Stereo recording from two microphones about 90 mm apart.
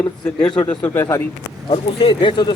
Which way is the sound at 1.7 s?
85° left.